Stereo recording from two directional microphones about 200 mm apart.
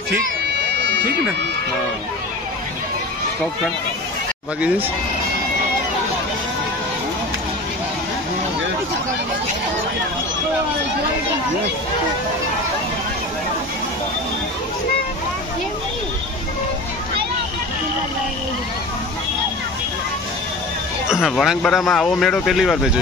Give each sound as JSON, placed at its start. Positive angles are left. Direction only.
{"t": 0.1, "sound": "bagpipes", "side_deg": -60}
{"t": 21.1, "sound": "speech", "side_deg": 0}